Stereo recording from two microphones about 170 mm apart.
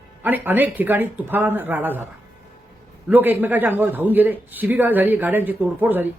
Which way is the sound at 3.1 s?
10° right (ahead or behind).